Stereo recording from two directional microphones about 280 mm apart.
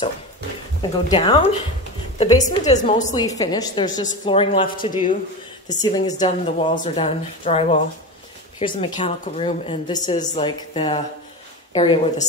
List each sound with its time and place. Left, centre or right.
1.0 s a woman's voice: left
2.7 s a woman's voice: left
3.3 s a woman's voice: centre